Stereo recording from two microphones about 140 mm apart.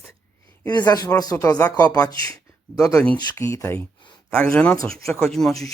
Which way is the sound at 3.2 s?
25° left (ahead or behind).